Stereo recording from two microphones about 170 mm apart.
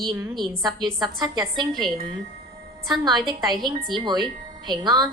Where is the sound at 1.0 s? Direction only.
25° right (ahead or behind).